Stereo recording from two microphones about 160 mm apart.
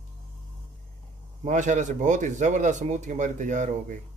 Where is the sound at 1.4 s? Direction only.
50° right (ahead or behind).